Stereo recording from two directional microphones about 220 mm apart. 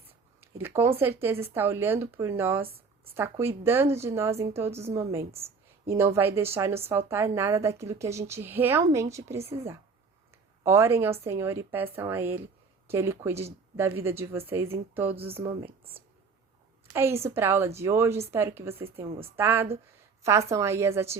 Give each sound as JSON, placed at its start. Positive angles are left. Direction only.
{"t": 0.6, "sound": "a woman's voice", "side_deg": -10}
{"t": 10.6, "sound": "a woman's voice", "side_deg": -10}
{"t": 15.3, "sound": "speech", "side_deg": -25}
{"t": 16.9, "sound": "a woman's voice", "side_deg": -10}